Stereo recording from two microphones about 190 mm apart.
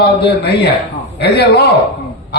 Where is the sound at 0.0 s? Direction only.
60° left (ahead or behind).